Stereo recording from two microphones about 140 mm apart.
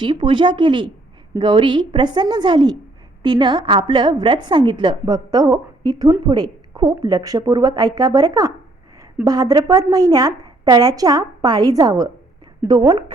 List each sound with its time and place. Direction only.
0.0 s a woman's voice: 35° right (ahead or behind)